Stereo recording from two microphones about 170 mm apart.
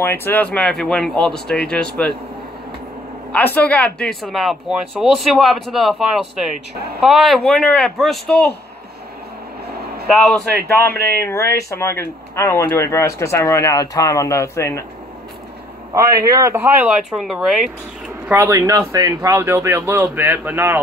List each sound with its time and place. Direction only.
0.0 s speech: 10° left (ahead or behind)
3.3 s speech: 10° left (ahead or behind)
10.0 s speech: centre (ahead or behind)
11.1 s speech: 15° left (ahead or behind)
16.3 s speech: 20° right (ahead or behind)
17.2 s speech: centre (ahead or behind)
18.3 s speech: 15° right (ahead or behind)